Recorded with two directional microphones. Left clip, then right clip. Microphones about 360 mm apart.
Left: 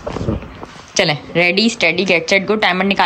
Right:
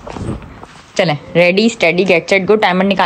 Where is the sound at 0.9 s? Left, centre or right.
Centre.